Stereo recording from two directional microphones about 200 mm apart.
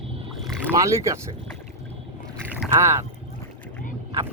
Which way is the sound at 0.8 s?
15° right (ahead or behind).